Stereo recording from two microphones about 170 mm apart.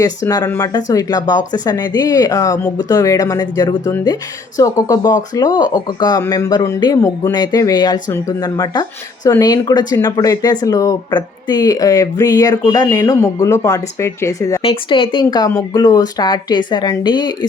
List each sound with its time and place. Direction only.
0.0 s speech: 20° left (ahead or behind)
14.6 s speech: 30° left (ahead or behind)